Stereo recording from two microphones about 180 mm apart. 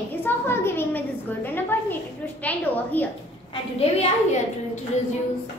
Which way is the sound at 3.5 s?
35° left (ahead or behind).